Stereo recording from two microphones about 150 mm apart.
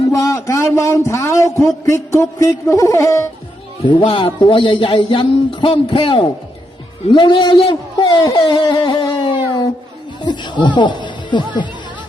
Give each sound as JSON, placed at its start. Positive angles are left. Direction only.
{"t": 0.1, "sound": "a man's voice", "side_deg": 20}
{"t": 3.8, "sound": "speech", "side_deg": 35}